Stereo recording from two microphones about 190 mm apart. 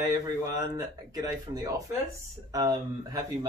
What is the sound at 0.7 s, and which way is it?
Speech, 20° right (ahead or behind).